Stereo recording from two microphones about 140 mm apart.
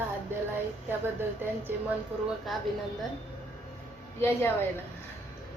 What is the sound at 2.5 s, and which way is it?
Speech, centre (ahead or behind).